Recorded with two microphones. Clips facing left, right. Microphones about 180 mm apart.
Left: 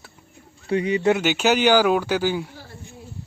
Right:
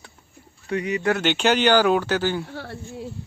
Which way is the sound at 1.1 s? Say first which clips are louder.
Left 1 dB; 5° left (ahead or behind).